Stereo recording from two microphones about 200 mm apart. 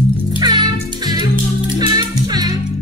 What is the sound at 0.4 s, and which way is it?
Music, 20° right (ahead or behind).